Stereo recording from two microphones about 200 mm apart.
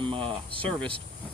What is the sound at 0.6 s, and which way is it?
Speech, 5° left (ahead or behind).